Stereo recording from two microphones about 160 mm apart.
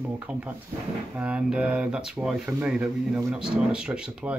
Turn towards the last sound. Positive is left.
turn(degrees=-5)  # may be behind; listen again after turning